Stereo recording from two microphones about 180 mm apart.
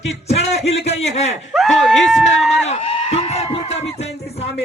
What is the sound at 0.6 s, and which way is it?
Speech, 35° left (ahead or behind).